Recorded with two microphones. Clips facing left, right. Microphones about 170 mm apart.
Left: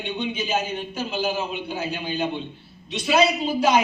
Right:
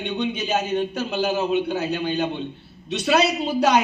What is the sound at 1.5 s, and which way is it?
A man's voice, 65° right (ahead or behind).